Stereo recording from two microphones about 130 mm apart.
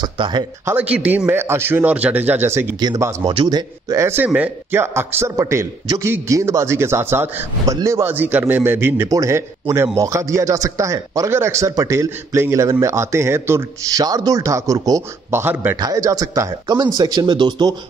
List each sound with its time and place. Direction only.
0.0 s speech: 35° right (ahead or behind)
0.7 s a man's voice: 10° right (ahead or behind); by 17.7 s 35° right (ahead or behind)